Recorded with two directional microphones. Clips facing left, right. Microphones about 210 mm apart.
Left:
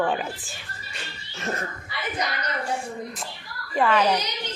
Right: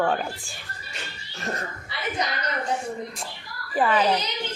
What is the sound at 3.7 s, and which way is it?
Speech, centre (ahead or behind).